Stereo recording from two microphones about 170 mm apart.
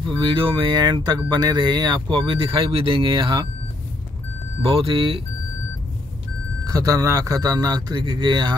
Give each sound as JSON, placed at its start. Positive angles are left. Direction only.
{"t": 0.0, "sound": "speech", "side_deg": -30}
{"t": 4.6, "sound": "speech", "side_deg": -35}
{"t": 6.6, "sound": "speech", "side_deg": -20}